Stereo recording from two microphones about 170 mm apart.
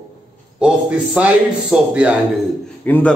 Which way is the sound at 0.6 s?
5° right (ahead or behind).